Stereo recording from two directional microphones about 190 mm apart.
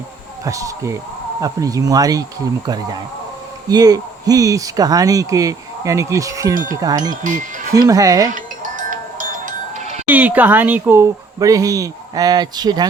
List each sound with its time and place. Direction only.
0.4 s speech: 15° right (ahead or behind)
3.7 s speech: 20° right (ahead or behind)
7.1 s speech: 40° right (ahead or behind)
7.9 s speech: 20° right (ahead or behind)
8.3 s sheep: 45° right (ahead or behind)
10.1 s speech: 10° right (ahead or behind)